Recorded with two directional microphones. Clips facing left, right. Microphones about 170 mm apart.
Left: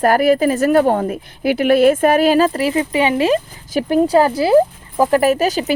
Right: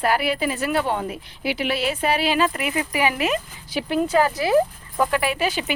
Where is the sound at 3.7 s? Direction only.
40° left (ahead or behind).